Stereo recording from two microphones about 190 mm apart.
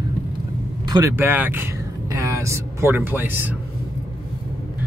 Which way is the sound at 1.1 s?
10° right (ahead or behind).